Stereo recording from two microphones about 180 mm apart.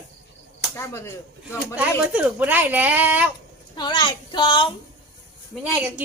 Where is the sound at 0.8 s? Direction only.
15° left (ahead or behind).